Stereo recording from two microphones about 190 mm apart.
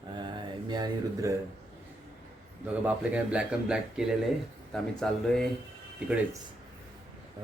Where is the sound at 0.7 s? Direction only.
20° right (ahead or behind).